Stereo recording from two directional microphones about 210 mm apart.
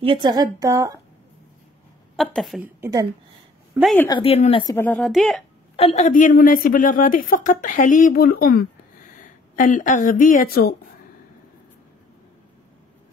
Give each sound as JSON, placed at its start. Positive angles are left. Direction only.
{"t": 0.0, "sound": "a woman's voice", "side_deg": -20}
{"t": 2.1, "sound": "speech", "side_deg": 0}
{"t": 2.8, "sound": "speech", "side_deg": -15}
{"t": 4.1, "sound": "speech", "side_deg": 25}
{"t": 4.7, "sound": "speech", "side_deg": 10}
{"t": 5.8, "sound": "a woman's voice", "side_deg": 30}